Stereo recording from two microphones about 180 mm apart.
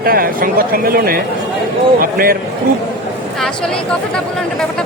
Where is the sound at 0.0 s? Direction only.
55° right (ahead or behind).